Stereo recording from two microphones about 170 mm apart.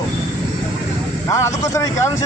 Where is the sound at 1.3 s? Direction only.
15° left (ahead or behind).